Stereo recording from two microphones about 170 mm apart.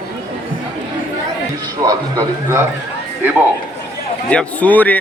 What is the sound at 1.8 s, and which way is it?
Speech, 20° right (ahead or behind).